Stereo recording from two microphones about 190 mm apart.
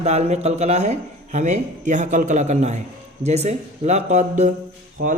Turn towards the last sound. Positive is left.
turn(degrees=-50)  # may be behind; listen again after turning